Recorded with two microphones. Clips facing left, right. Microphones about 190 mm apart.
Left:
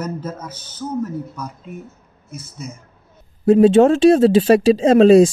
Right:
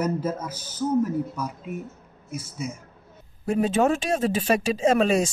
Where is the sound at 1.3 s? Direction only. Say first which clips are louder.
Right 1 dB; 10° right (ahead or behind).